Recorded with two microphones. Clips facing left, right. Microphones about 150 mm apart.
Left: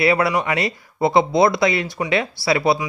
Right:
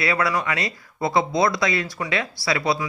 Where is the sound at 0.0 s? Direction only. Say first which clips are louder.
Left 5 dB; 25° left (ahead or behind).